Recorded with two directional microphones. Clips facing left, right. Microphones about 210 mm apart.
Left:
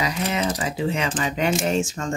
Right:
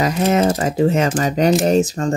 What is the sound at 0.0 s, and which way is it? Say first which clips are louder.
Speech: right 8 dB; 45° right (ahead or behind).